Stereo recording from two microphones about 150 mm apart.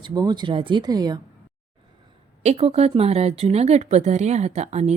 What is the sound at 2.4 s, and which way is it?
Speech, 45° right (ahead or behind).